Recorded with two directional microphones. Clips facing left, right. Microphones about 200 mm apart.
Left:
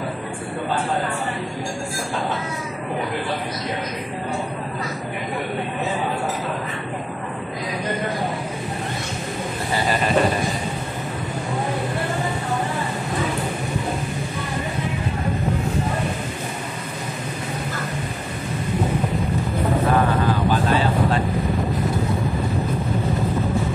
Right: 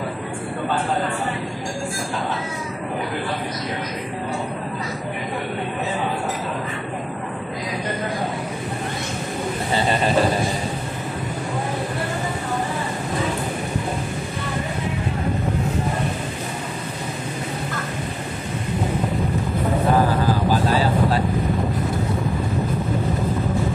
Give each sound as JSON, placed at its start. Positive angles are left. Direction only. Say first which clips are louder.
{"t": 9.8, "sound": "speech", "louder": "right 1 dB", "side_deg": -25}